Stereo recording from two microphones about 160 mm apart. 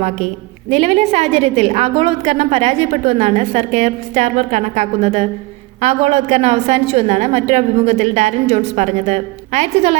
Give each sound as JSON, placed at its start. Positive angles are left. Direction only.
{"t": 0.7, "sound": "a woman's voice", "side_deg": -40}